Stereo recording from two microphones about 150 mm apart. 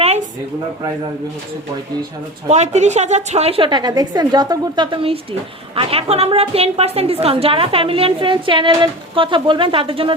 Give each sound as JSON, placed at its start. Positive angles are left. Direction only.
{"t": 2.5, "sound": "a woman's voice", "side_deg": -50}